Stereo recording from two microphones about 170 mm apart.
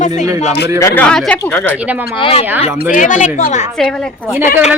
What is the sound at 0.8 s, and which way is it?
Speech, 10° left (ahead or behind).